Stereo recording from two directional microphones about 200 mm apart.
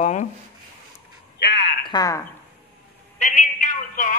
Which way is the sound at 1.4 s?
55° left (ahead or behind).